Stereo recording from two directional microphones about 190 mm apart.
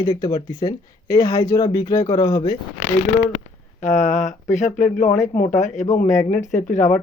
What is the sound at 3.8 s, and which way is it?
Speech, 40° left (ahead or behind).